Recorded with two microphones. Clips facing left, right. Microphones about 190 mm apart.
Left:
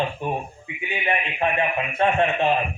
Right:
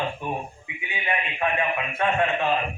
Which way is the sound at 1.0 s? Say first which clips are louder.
Left 2 dB; 25° left (ahead or behind).